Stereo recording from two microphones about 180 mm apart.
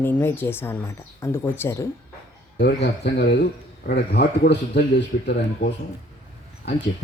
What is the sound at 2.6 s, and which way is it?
A man's voice, 70° left (ahead or behind).